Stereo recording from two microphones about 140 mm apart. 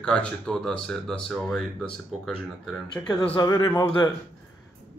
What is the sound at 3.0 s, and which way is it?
Speech, 15° left (ahead or behind).